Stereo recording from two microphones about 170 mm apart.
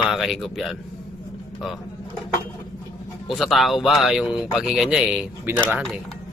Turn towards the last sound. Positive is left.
turn(degrees=-10)  # may be behind; listen again after turning